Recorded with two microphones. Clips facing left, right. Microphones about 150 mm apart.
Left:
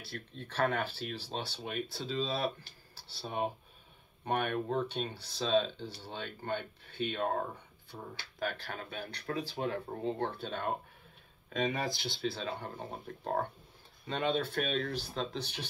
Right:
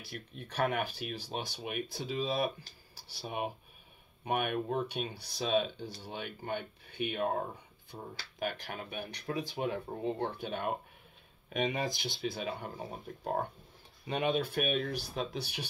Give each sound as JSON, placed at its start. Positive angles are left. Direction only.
{"t": 0.0, "sound": "speech", "side_deg": -15}